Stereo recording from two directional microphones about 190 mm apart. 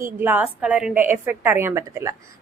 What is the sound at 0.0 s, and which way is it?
A woman's voice, 10° right (ahead or behind).